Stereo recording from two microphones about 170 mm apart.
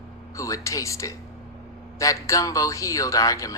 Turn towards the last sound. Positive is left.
turn(degrees=20)  # may be behind; listen again after turning